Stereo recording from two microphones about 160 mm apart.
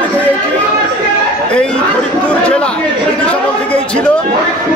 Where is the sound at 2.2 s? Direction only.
5° left (ahead or behind).